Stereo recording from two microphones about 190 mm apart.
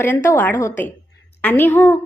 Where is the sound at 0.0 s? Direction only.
10° left (ahead or behind).